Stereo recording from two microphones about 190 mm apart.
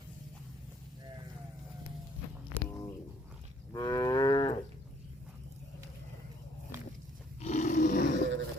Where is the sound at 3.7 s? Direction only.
20° left (ahead or behind).